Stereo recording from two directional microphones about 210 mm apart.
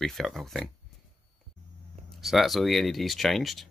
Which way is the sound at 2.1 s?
Centre (ahead or behind).